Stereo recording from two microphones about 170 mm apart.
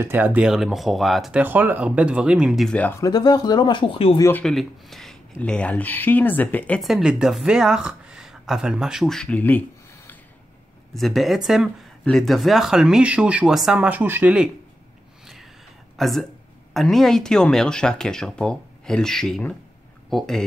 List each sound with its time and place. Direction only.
0.0 s speech: 10° right (ahead or behind); by 3.0 s 10° left (ahead or behind)
3.0 s speech: 25° left (ahead or behind)
4.2 s speech: 10° left (ahead or behind); by 14.5 s 5° right (ahead or behind)
16.0 s speech: centre (ahead or behind)